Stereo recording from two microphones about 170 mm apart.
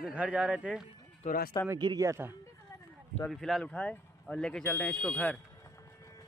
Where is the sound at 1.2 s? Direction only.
60° left (ahead or behind).